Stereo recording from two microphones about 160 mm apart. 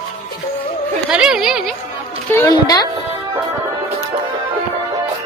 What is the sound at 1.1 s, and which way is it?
Music, 5° right (ahead or behind).